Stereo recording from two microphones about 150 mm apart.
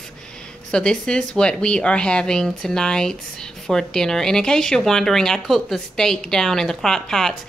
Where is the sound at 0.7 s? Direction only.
5° left (ahead or behind).